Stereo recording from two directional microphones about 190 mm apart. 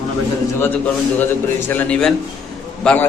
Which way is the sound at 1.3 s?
10° left (ahead or behind).